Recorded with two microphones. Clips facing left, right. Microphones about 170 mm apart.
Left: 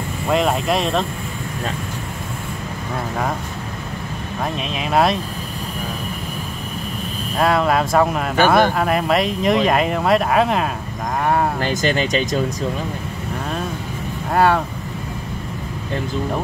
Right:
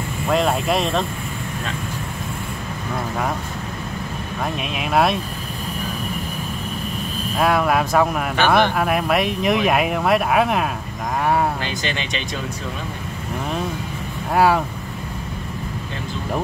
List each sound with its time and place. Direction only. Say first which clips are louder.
0.3 s speech: left 1 dB; centre (ahead or behind)
4.7 s speech: left 1 dB; centre (ahead or behind)
7.3 s speech: left 1 dB; centre (ahead or behind)
11.6 s speech: left 7 dB; 45° left (ahead or behind)
14.3 s speech: even; 5° right (ahead or behind)